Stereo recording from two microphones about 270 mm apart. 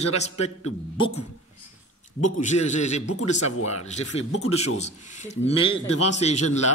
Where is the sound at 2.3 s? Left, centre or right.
Left.